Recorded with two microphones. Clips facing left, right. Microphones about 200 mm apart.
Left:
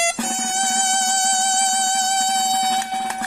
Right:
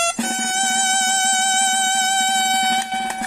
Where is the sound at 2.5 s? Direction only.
15° right (ahead or behind).